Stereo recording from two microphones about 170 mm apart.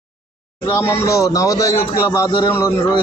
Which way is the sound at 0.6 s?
15° left (ahead or behind).